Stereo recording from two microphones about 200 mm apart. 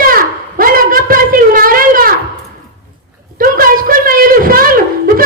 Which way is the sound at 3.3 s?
45° right (ahead or behind).